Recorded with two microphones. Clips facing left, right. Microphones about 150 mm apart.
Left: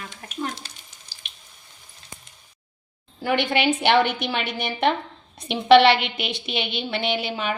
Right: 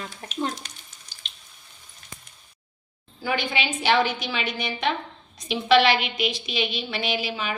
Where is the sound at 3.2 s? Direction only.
65° left (ahead or behind).